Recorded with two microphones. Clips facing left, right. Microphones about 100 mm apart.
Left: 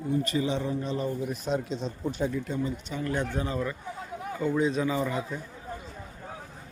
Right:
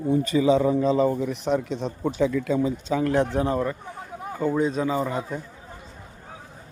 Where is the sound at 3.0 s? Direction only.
70° right (ahead or behind); by 5.4 s 35° right (ahead or behind).